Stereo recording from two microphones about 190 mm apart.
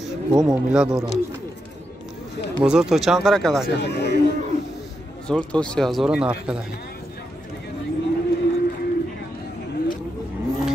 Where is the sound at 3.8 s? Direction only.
60° left (ahead or behind).